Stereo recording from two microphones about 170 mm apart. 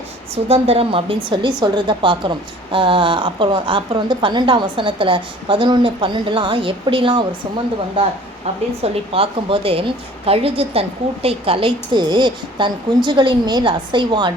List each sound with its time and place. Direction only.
0.4 s a woman's voice: 35° right (ahead or behind)
8.8 s a woman's voice: 35° right (ahead or behind)